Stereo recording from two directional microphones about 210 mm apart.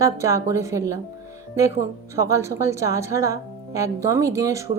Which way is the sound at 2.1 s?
15° right (ahead or behind).